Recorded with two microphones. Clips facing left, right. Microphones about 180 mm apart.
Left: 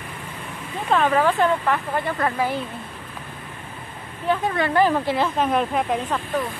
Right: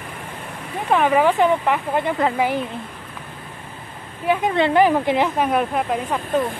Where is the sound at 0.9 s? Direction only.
15° right (ahead or behind).